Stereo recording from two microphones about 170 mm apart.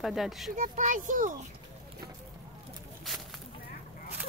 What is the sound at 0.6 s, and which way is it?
Speech, 50° right (ahead or behind).